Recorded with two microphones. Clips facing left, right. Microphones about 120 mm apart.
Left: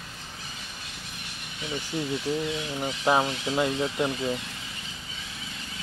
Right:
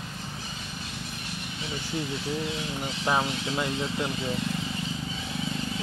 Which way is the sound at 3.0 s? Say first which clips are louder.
Left 3 dB; 20° left (ahead or behind).